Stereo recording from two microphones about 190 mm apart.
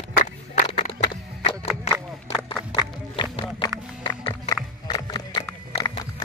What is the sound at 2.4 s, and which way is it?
Run, 25° left (ahead or behind).